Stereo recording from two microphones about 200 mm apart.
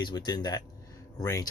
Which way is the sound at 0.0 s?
20° left (ahead or behind).